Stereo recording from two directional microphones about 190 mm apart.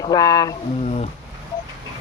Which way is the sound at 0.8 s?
35° left (ahead or behind).